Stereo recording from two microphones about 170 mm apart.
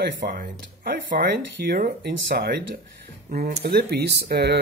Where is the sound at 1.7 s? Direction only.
70° right (ahead or behind).